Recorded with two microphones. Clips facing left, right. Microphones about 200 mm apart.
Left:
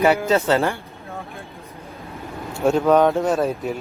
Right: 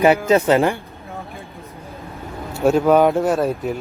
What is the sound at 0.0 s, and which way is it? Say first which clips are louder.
Speech: right 3 dB; 20° right (ahead or behind).